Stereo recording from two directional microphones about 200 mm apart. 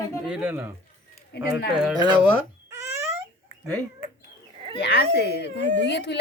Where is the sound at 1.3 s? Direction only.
55° left (ahead or behind).